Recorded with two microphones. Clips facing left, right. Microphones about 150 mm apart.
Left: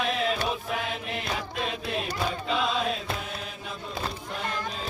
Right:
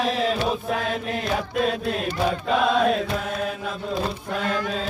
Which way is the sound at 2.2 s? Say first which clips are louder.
Right 9 dB; 55° right (ahead or behind).